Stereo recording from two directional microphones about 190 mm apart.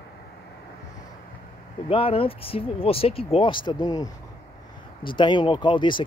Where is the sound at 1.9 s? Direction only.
30° left (ahead or behind).